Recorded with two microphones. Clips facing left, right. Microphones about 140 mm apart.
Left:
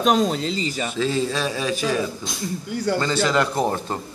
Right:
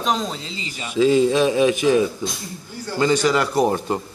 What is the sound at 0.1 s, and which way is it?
Speech, 50° left (ahead or behind).